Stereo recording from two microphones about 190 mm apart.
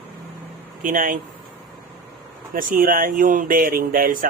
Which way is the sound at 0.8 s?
45° right (ahead or behind).